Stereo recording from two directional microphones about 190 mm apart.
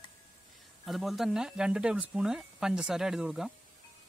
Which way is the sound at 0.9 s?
Centre (ahead or behind).